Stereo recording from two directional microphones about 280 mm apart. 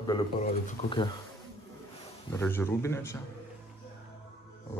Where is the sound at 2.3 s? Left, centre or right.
Centre.